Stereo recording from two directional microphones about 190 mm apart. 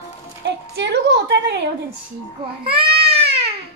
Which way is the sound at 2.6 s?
30° right (ahead or behind).